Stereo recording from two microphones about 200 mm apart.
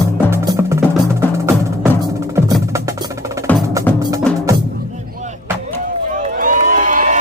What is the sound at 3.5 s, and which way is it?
Percussion, 5° left (ahead or behind).